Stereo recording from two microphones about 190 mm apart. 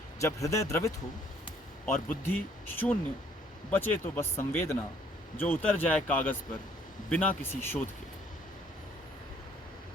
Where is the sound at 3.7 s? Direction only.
10° left (ahead or behind).